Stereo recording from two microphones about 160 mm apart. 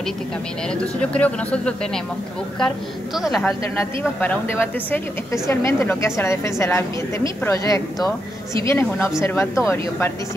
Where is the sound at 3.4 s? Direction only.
10° left (ahead or behind).